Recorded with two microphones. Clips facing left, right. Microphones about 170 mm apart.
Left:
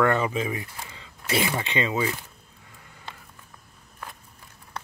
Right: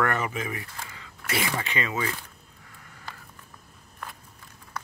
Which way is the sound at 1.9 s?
10° left (ahead or behind).